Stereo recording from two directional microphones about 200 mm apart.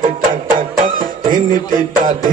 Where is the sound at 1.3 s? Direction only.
45° right (ahead or behind).